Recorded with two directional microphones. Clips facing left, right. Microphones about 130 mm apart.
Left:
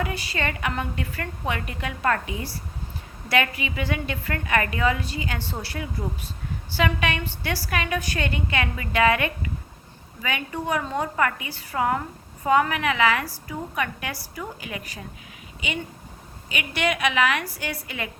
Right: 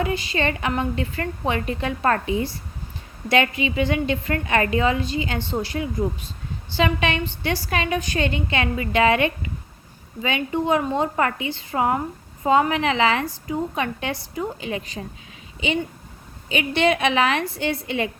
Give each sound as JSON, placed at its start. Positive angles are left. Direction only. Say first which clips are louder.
{"t": 0.0, "sound": "a woman's voice", "louder": "right 5 dB", "side_deg": -20}